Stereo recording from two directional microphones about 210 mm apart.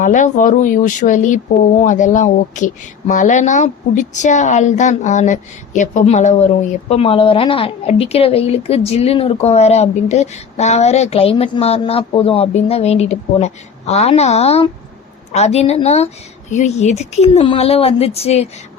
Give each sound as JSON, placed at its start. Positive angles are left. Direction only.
{"t": 0.0, "sound": "a woman's voice", "side_deg": 35}